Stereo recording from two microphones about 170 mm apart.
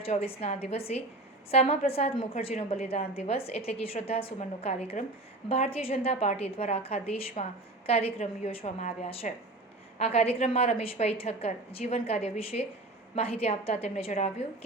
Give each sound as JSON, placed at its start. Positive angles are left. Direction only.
{"t": 0.0, "sound": "a woman's voice", "side_deg": 35}